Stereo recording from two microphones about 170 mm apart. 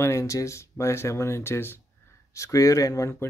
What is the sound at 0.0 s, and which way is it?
Speech, 15° left (ahead or behind).